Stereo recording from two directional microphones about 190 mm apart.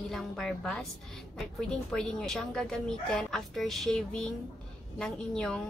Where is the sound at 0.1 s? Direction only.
Centre (ahead or behind).